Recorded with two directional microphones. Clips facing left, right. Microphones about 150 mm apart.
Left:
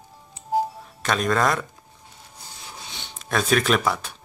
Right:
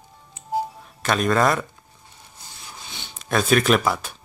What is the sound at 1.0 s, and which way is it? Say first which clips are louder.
Speech: right 2 dB; 5° right (ahead or behind).